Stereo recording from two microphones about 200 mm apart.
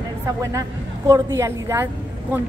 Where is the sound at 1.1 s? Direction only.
15° right (ahead or behind).